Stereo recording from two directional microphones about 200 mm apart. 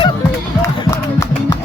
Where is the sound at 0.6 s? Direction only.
15° left (ahead or behind).